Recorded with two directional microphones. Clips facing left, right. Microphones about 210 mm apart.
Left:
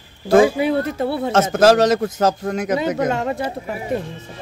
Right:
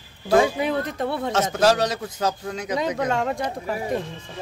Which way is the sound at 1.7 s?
45° left (ahead or behind).